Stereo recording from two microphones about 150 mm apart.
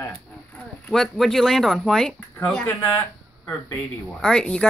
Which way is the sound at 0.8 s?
5° left (ahead or behind).